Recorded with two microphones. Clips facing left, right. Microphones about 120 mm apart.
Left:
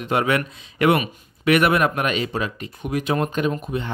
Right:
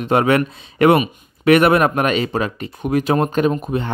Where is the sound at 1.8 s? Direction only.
45° right (ahead or behind).